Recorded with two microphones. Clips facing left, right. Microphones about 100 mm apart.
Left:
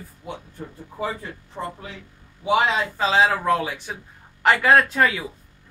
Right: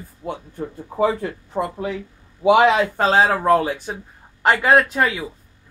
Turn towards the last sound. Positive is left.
turn(degrees=-15)  # may be behind; listen again after turning